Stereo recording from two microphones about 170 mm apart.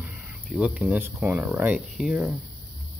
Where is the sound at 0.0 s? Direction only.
Centre (ahead or behind).